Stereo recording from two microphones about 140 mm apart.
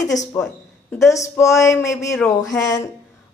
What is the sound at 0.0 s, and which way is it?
Speech, 25° left (ahead or behind).